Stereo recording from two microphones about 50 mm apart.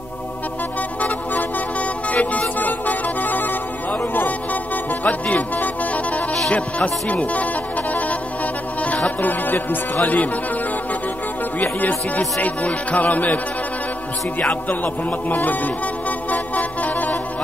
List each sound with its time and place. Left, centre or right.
2.0 s music: left
5.0 s music: left
6.5 s speech: left
8.8 s music: centre
9.2 s speech: left
12.4 s speech: left
15.2 s speech: left
16.3 s music: left